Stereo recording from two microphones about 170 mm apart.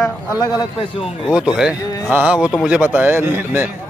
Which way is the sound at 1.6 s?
10° right (ahead or behind).